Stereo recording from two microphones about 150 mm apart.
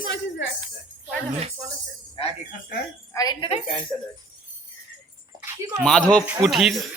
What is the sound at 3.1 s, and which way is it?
Speech, 25° left (ahead or behind).